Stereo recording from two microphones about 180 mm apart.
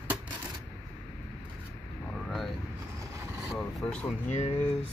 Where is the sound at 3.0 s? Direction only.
15° right (ahead or behind).